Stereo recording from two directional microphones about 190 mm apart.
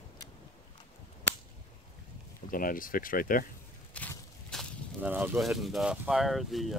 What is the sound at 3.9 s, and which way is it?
Walk, 5° left (ahead or behind).